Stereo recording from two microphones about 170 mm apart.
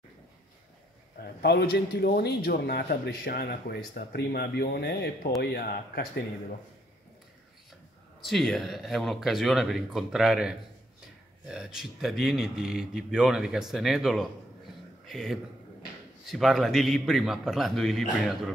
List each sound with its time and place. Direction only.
1.2 s a man's voice: 75° left (ahead or behind)
8.3 s speech: centre (ahead or behind)